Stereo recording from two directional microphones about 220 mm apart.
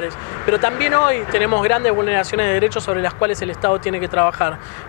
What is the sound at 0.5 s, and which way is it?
Speech, 20° left (ahead or behind).